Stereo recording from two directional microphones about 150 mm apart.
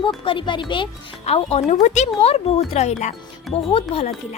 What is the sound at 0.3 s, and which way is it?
Speech, 30° left (ahead or behind).